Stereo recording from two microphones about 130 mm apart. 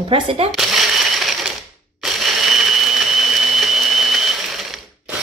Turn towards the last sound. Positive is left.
turn(degrees=0)  # may be behind; listen again after turning